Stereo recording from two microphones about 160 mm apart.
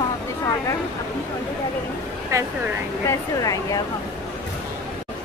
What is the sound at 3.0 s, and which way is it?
Speech, 20° left (ahead or behind).